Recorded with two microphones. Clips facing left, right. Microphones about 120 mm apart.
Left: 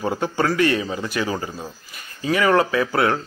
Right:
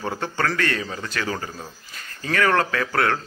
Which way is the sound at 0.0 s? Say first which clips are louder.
Left 4 dB; 15° left (ahead or behind).